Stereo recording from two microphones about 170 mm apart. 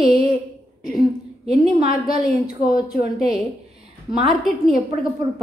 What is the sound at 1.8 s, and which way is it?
A woman's voice, 60° left (ahead or behind).